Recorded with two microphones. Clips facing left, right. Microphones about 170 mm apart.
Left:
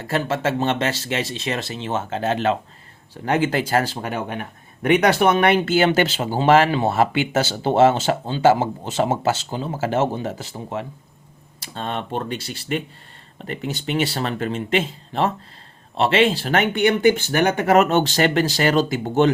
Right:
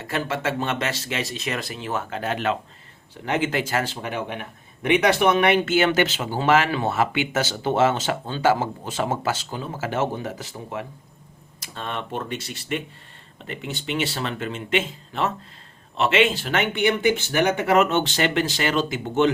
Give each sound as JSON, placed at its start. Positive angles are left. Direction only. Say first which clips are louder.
{"t": 0.0, "sound": "speech", "louder": "left 4 dB", "side_deg": 35}
{"t": 5.6, "sound": "speech", "louder": "left 2 dB", "side_deg": 35}